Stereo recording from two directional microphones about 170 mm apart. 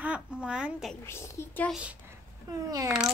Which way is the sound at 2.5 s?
20° right (ahead or behind).